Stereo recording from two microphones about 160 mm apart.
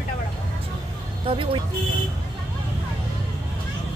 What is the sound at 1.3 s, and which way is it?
Speech, 35° right (ahead or behind).